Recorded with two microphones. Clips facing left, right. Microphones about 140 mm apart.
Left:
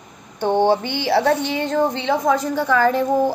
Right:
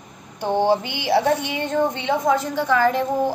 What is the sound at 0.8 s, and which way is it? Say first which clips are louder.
Speech: left 1 dB; 10° right (ahead or behind).